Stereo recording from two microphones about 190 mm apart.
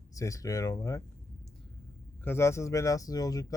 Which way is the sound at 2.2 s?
15° left (ahead or behind).